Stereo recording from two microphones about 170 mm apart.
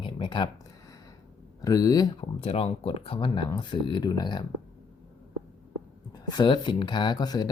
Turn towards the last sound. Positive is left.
turn(degrees=25)  # may be behind; listen again after turning